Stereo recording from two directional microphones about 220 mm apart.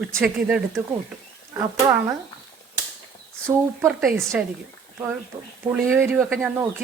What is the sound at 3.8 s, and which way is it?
Speech, centre (ahead or behind).